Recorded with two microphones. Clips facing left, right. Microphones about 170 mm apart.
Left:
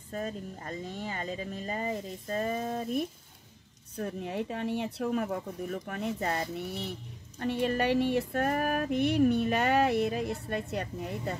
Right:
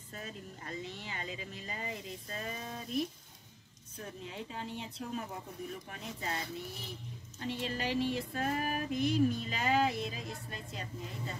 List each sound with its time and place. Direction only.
0.1 s speech: 40° left (ahead or behind)
3.9 s music: 60° left (ahead or behind)